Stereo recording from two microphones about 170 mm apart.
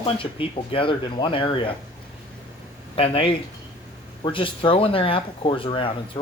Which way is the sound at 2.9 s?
30° left (ahead or behind).